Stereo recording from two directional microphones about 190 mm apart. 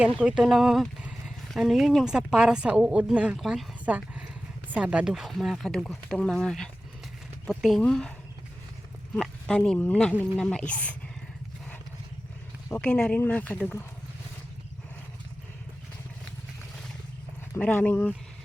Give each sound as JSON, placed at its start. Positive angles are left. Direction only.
{"t": 0.2, "sound": "a woman's voice", "side_deg": 0}
{"t": 9.1, "sound": "a woman's voice", "side_deg": 5}
{"t": 12.6, "sound": "speech", "side_deg": 10}
{"t": 17.5, "sound": "speech", "side_deg": 10}